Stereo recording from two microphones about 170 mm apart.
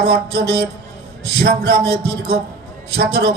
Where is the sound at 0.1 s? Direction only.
65° right (ahead or behind).